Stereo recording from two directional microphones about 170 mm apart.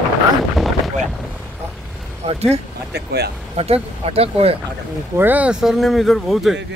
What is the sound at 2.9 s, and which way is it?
Speech, 70° right (ahead or behind).